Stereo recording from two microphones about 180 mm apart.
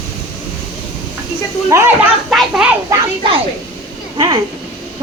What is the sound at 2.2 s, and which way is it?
Children playing, 5° right (ahead or behind).